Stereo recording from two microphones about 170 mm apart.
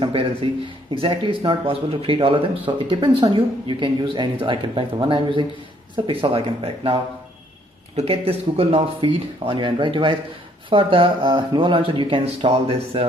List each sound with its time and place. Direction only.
0.0 s speech: 30° right (ahead or behind)